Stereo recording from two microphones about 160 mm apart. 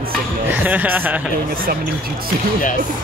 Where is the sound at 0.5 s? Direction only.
10° right (ahead or behind).